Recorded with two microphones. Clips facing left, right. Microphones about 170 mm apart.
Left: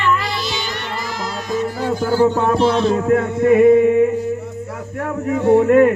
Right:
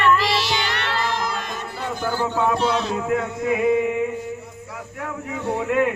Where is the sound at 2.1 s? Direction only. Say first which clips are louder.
Left 6 dB; 35° left (ahead or behind).